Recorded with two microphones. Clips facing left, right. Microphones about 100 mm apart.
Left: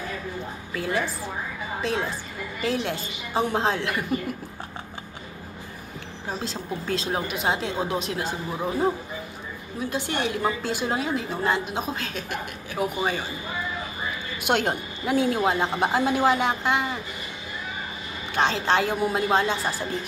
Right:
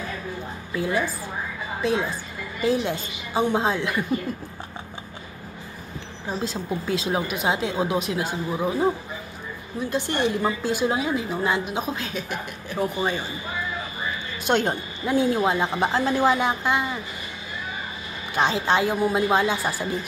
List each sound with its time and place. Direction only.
0.7 s a woman's voice: centre (ahead or behind)
6.2 s a woman's voice: 5° right (ahead or behind)
14.4 s a woman's voice: 5° left (ahead or behind)
15.9 s a woman's voice: 10° left (ahead or behind)
18.3 s a woman's voice: 5° right (ahead or behind)